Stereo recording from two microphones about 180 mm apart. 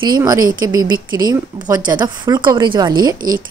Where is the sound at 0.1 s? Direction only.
20° right (ahead or behind).